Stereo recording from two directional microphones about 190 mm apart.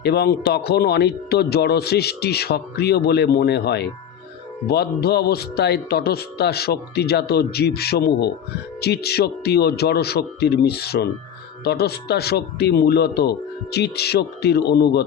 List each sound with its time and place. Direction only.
0.0 s speech: 60° left (ahead or behind)